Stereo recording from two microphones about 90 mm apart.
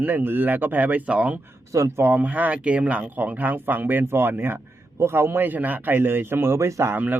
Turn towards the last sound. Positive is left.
turn(degrees=-30)  # may be behind; listen again after turning